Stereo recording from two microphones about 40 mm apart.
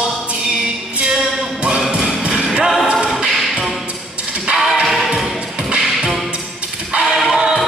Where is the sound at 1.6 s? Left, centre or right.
Centre.